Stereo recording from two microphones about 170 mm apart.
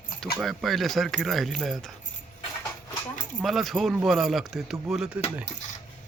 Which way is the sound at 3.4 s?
Centre (ahead or behind).